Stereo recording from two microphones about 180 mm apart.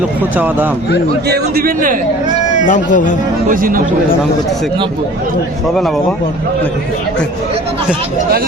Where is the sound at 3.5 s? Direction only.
50° right (ahead or behind).